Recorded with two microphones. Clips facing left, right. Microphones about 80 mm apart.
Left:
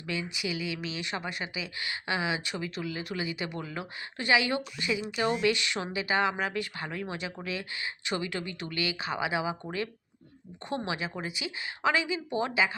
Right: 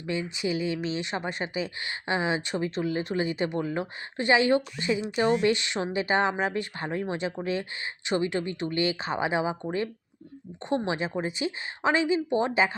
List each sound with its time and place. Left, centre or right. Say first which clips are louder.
0.0 s speech: right 4 dB; right
10.6 s a woman's voice: right 5 dB; right